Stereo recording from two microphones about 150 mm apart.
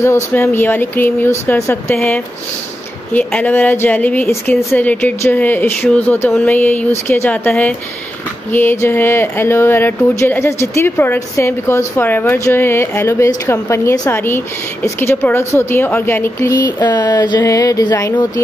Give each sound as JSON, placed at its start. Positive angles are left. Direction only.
{"t": 0.0, "sound": "speech", "side_deg": 15}
{"t": 3.1, "sound": "a woman's voice", "side_deg": 10}